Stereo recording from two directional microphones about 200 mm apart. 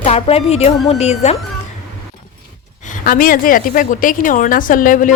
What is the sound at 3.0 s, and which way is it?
A woman's voice, 45° left (ahead or behind).